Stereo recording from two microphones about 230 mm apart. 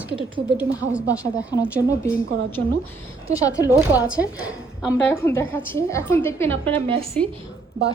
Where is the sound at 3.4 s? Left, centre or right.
Centre.